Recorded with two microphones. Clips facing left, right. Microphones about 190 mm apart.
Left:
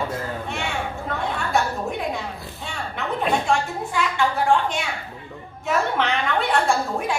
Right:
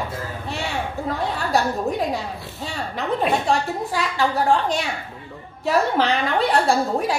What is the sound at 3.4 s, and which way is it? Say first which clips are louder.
A woman's voice: right 1 dB; 35° right (ahead or behind).